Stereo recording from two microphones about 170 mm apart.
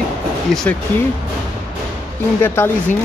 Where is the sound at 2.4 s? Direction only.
15° left (ahead or behind).